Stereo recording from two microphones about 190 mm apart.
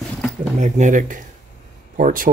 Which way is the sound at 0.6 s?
40° right (ahead or behind).